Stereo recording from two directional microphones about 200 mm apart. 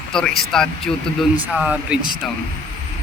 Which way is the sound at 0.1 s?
5° left (ahead or behind).